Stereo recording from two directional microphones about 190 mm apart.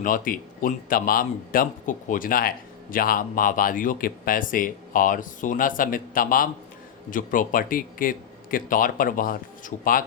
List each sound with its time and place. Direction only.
0.0 s speech: 45° left (ahead or behind)